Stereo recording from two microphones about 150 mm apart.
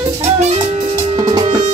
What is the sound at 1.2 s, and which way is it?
Music, 35° right (ahead or behind).